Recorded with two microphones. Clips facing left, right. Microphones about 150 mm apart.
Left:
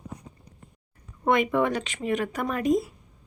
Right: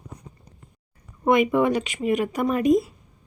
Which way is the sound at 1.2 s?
15° right (ahead or behind).